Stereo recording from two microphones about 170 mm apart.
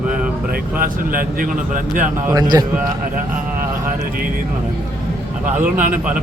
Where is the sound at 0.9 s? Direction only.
55° right (ahead or behind).